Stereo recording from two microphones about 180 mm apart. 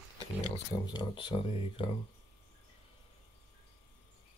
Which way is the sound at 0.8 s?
25° left (ahead or behind).